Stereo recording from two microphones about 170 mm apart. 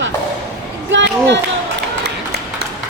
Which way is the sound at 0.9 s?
90° right.